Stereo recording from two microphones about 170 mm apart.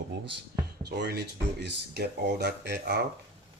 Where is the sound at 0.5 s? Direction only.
65° right (ahead or behind).